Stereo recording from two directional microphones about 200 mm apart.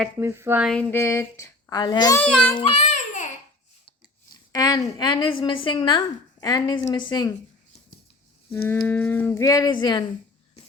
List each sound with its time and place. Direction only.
0.2 s speech: 10° right (ahead or behind)
0.7 s speech: 10° left (ahead or behind)
2.3 s speech: 5° left (ahead or behind)
2.6 s child singing: 30° left (ahead or behind)
4.5 s a woman's voice: 20° left (ahead or behind)
8.6 s speech: 10° left (ahead or behind)